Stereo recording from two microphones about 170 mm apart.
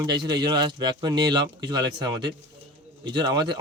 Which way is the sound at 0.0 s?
25° right (ahead or behind).